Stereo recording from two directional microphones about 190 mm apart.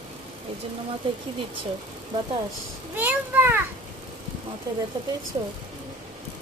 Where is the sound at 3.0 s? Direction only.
10° right (ahead or behind).